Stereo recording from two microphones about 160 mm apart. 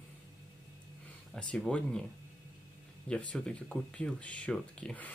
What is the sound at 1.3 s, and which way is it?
Speech, 5° left (ahead or behind).